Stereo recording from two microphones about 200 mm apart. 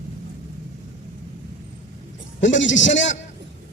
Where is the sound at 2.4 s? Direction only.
65° left (ahead or behind).